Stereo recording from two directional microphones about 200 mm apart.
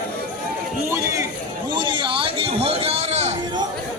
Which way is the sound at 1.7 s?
25° right (ahead or behind).